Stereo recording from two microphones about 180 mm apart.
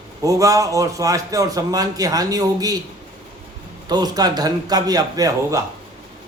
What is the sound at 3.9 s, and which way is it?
A man's voice, 20° right (ahead or behind).